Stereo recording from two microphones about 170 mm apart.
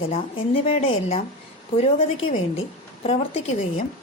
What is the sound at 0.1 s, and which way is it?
A woman's voice, 35° left (ahead or behind).